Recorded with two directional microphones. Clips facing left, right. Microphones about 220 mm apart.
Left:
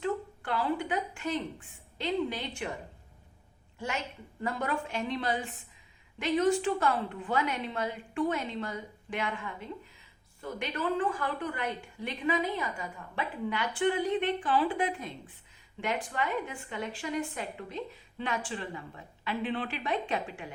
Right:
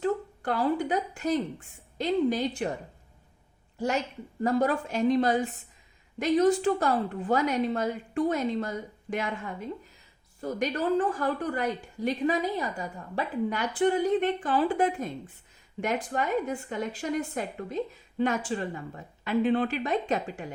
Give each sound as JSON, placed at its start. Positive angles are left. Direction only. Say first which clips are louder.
{"t": 0.0, "sound": "a woman's voice", "louder": "right 4 dB", "side_deg": -40}
{"t": 3.8, "sound": "a woman's voice", "louder": "right 7 dB", "side_deg": -40}